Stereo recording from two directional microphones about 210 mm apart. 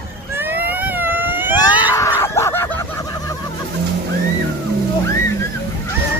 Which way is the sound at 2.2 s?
10° left (ahead or behind).